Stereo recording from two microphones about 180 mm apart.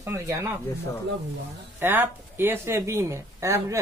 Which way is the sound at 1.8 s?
10° right (ahead or behind).